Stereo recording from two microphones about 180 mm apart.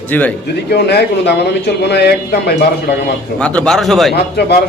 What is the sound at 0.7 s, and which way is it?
Speech, 65° left (ahead or behind).